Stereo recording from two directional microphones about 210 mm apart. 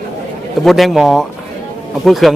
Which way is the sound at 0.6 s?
Centre (ahead or behind).